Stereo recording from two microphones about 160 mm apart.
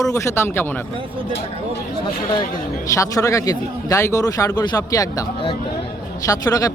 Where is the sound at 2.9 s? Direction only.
20° left (ahead or behind).